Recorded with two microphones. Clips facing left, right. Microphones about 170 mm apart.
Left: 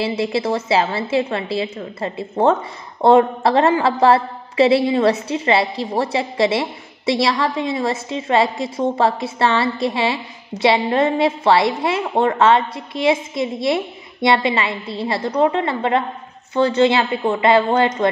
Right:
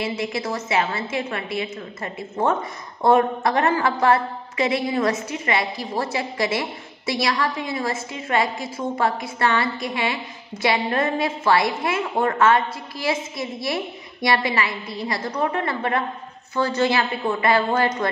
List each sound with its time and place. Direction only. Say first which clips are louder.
0.0 s a woman's voice: left 6 dB; 30° left (ahead or behind)